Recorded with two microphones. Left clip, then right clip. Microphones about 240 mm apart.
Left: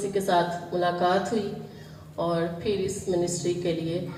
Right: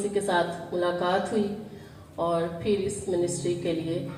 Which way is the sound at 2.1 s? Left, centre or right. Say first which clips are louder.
Right 1 dB; left.